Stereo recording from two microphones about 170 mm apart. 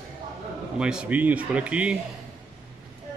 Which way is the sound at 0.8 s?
5° right (ahead or behind).